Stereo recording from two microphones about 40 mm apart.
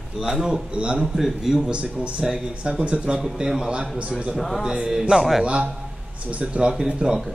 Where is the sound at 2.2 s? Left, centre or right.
Centre.